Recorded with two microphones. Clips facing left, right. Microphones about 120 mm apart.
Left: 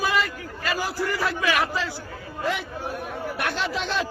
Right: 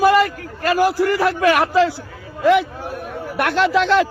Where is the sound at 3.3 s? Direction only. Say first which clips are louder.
Right 13 dB; 70° right (ahead or behind).